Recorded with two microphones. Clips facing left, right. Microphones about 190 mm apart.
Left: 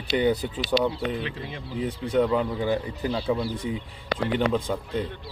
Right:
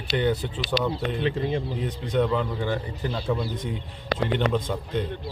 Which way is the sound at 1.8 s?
10° left (ahead or behind).